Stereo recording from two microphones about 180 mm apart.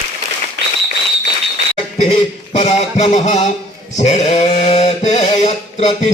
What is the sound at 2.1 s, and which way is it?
A man's voice, 40° left (ahead or behind).